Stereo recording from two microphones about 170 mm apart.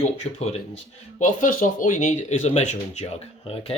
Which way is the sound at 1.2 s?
50° left (ahead or behind).